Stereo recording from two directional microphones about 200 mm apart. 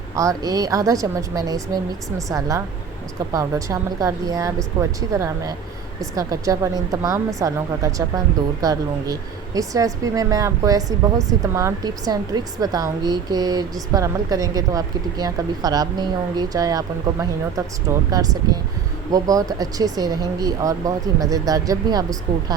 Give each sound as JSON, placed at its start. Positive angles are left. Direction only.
{"t": 0.2, "sound": "a woman's voice", "side_deg": -15}